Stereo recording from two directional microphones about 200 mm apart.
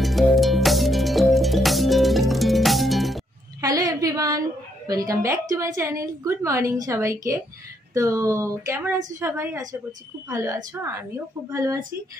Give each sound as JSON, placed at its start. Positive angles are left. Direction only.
{"t": 0.0, "sound": "music", "side_deg": 0}
{"t": 3.6, "sound": "a woman's voice", "side_deg": -20}